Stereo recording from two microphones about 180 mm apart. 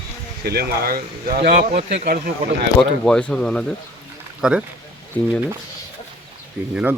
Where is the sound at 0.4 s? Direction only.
60° right (ahead or behind).